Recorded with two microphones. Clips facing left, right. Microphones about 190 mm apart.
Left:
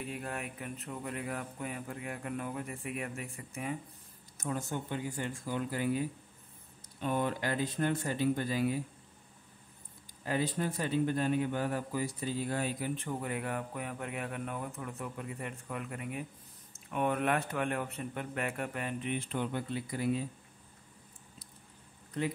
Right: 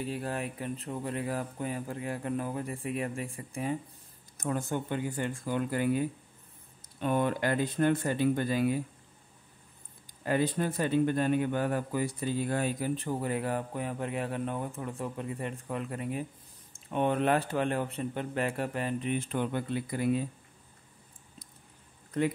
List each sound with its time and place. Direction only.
0.0 s a man's voice: 35° right (ahead or behind)
4.4 s speech: 55° right (ahead or behind)
10.2 s a man's voice: 55° right (ahead or behind)